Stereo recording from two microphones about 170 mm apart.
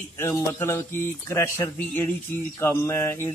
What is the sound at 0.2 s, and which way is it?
A man's voice, 15° left (ahead or behind).